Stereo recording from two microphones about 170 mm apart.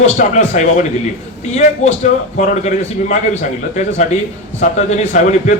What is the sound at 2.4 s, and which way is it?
Speech, 45° left (ahead or behind).